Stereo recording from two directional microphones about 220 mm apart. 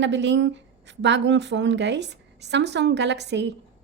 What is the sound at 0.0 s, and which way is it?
A woman's voice, 55° right (ahead or behind).